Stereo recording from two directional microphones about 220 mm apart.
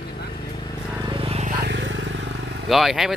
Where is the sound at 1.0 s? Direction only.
25° right (ahead or behind).